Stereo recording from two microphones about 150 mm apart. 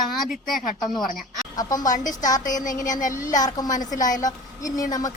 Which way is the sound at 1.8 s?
60° left (ahead or behind).